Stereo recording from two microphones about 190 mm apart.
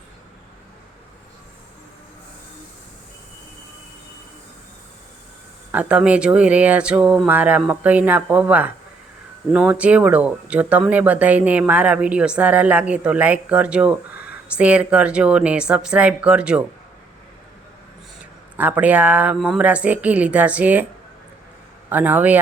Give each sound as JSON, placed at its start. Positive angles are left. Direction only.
{"t": 5.7, "sound": "speech", "side_deg": -5}
{"t": 18.5, "sound": "speech", "side_deg": -10}
{"t": 21.8, "sound": "speech", "side_deg": -10}